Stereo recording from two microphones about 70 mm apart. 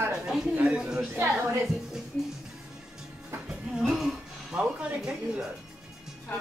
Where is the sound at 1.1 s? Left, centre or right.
Right.